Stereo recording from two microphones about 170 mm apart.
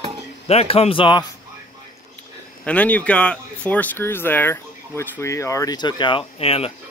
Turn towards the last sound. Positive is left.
turn(degrees=35)  # may be behind; listen again after turning